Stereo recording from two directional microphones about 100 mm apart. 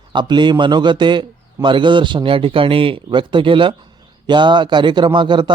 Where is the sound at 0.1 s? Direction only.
50° right (ahead or behind).